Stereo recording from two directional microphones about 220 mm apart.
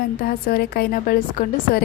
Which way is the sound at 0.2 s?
40° left (ahead or behind).